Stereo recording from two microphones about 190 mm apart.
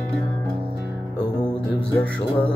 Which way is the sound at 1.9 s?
5° left (ahead or behind).